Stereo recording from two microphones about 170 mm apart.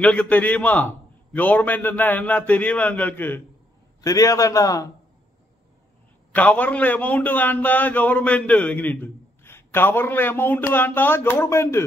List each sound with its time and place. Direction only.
0.0 s a man's voice: 5° left (ahead or behind)
6.3 s a man's voice: 10° left (ahead or behind)